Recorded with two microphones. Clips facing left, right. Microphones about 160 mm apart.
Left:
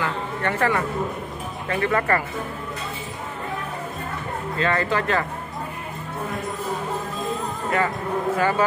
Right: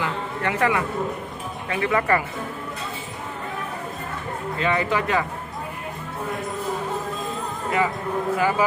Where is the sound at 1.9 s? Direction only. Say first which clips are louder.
Right 2 dB; 15° right (ahead or behind).